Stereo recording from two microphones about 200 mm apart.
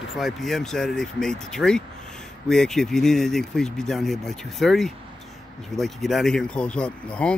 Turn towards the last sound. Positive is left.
turn(degrees=5)  # may be behind; listen again after turning